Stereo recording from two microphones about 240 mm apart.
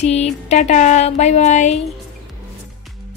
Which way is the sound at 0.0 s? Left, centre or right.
Left.